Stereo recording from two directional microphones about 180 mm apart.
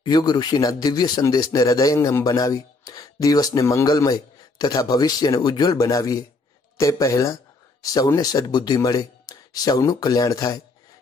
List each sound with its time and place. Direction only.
0.0 s speech: 20° left (ahead or behind)